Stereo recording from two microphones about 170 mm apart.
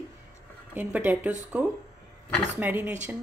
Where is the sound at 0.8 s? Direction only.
10° right (ahead or behind).